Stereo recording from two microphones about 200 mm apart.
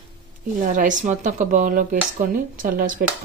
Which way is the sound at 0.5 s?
40° right (ahead or behind).